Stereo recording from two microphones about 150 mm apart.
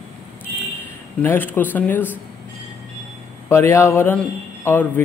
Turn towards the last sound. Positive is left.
turn(degrees=15)  # may be behind; listen again after turning